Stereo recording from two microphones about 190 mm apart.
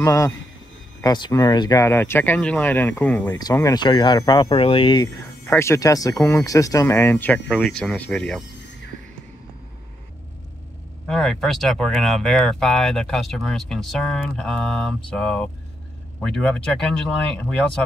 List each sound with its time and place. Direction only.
0.0 s speech: 15° left (ahead or behind)
3.3 s speech: 20° left (ahead or behind)
11.1 s speech: centre (ahead or behind)